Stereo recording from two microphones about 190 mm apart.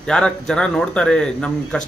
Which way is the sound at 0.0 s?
5° left (ahead or behind).